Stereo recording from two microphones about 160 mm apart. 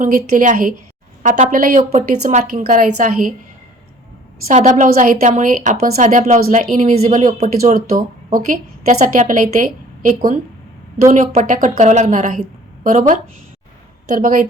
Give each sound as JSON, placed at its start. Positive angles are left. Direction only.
{"t": 0.0, "sound": "a woman's voice", "side_deg": -55}
{"t": 4.4, "sound": "speech", "side_deg": -50}
{"t": 4.9, "sound": "a woman's voice", "side_deg": -60}
{"t": 7.6, "sound": "a woman's voice", "side_deg": -60}